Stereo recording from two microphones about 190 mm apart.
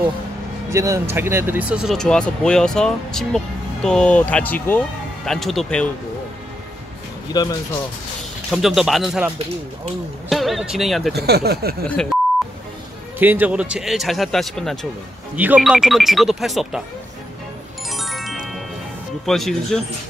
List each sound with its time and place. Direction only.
0.7 s speech: 15° right (ahead or behind); by 5.9 s 5° left (ahead or behind)
7.3 s speech: 20° left (ahead or behind)
8.5 s speech: centre (ahead or behind)
10.3 s speech: centre (ahead or behind)
11.1 s speech: 55° right (ahead or behind)
13.2 s speech: 10° right (ahead or behind)
17.8 s music: centre (ahead or behind)
19.2 s speech: centre (ahead or behind)